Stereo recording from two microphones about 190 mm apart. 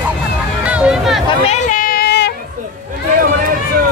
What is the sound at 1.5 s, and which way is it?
Child singing, 45° left (ahead or behind).